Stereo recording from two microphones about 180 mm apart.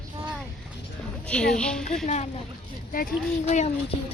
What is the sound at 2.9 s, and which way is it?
Speech, 50° left (ahead or behind).